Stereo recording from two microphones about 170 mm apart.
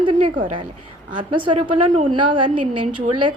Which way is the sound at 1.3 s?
30° right (ahead or behind).